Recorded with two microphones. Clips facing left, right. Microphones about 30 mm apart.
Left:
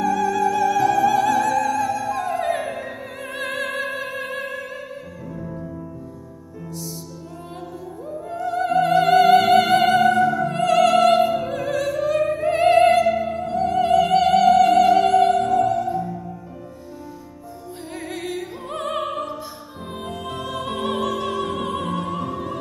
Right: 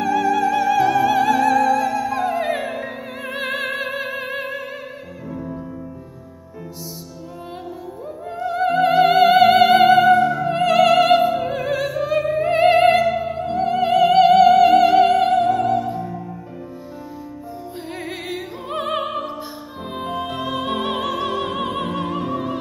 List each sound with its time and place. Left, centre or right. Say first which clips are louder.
0.0 s music: right 2 dB; right
8.3 s music: right 2 dB; right
11.5 s opera: right 1 dB; centre
13.3 s music: right 1 dB; right
17.9 s music: left 1 dB; centre